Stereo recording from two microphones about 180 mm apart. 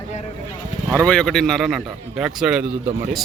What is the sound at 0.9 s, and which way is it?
Speech, 5° left (ahead or behind).